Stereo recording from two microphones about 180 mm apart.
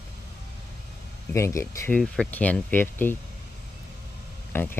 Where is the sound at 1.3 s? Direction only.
15° left (ahead or behind).